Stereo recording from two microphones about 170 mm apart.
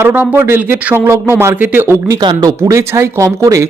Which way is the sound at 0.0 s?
10° right (ahead or behind).